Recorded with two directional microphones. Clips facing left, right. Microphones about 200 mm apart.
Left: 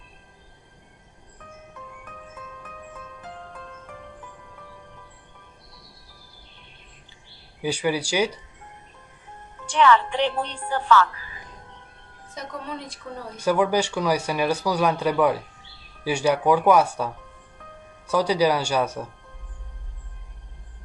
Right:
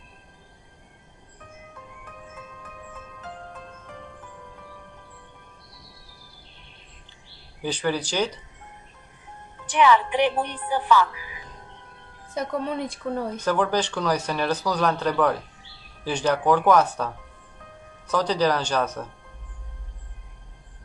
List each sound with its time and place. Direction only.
7.6 s speech: 10° left (ahead or behind)
9.8 s a woman's voice: 15° right (ahead or behind)
12.4 s a woman's voice: 55° right (ahead or behind)
13.4 s speech: 10° left (ahead or behind)
18.1 s speech: 10° left (ahead or behind)